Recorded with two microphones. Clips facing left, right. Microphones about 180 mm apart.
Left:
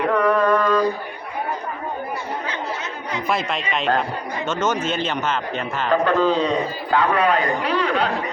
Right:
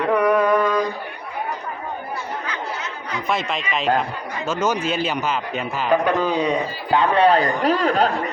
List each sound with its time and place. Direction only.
0.1 s a sound: 10° right (ahead or behind)
3.2 s a man's voice: centre (ahead or behind)
6.9 s a man's voice: 25° right (ahead or behind); by 8.1 s 40° right (ahead or behind)